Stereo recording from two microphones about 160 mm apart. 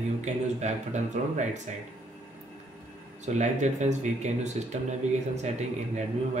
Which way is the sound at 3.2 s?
45° right (ahead or behind).